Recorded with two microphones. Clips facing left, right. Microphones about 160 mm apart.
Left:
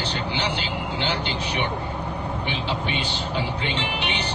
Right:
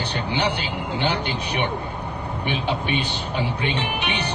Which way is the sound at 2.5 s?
55° right (ahead or behind).